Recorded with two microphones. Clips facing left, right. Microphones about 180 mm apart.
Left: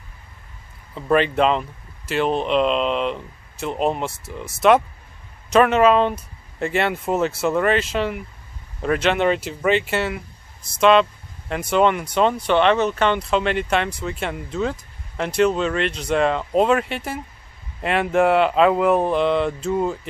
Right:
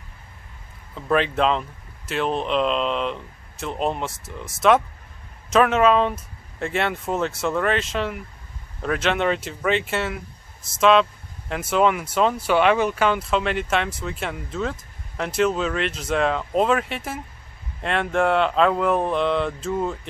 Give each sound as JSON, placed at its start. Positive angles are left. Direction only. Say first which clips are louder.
{"t": 0.9, "sound": "speech", "louder": "left 3 dB", "side_deg": 0}